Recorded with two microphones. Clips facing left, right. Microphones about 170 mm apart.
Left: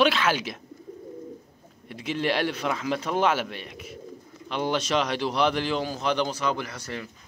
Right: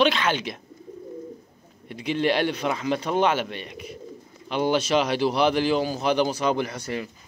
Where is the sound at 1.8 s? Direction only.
Centre (ahead or behind); by 7.0 s 15° right (ahead or behind).